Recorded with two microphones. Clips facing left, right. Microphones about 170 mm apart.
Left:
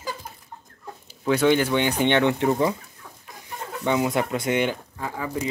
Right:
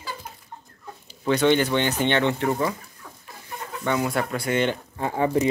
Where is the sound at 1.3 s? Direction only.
5° left (ahead or behind).